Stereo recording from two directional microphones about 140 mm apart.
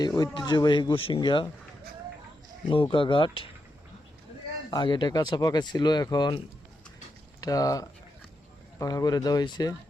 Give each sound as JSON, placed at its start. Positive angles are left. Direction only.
{"t": 0.2, "sound": "speech", "side_deg": 30}
{"t": 2.6, "sound": "speech", "side_deg": 40}
{"t": 4.7, "sound": "speech", "side_deg": 35}
{"t": 7.4, "sound": "speech", "side_deg": 25}